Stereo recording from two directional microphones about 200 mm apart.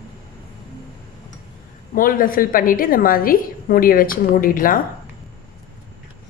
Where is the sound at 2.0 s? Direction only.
45° left (ahead or behind).